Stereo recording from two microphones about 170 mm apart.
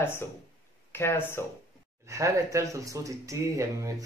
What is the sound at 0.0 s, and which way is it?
Speech, 15° left (ahead or behind).